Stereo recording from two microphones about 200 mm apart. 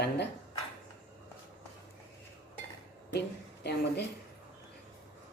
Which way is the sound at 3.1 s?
55° left (ahead or behind).